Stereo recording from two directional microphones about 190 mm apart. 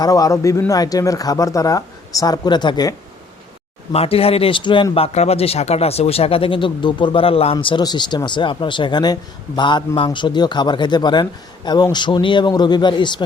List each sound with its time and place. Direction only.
0.0 s speech: 20° left (ahead or behind)
3.9 s speech: 30° left (ahead or behind)